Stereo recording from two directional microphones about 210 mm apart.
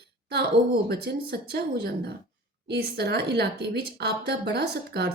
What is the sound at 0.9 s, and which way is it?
A woman's voice, 50° right (ahead or behind).